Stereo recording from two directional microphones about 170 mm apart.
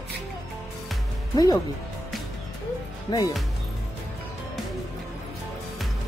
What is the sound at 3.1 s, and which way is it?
Speech, 25° left (ahead or behind).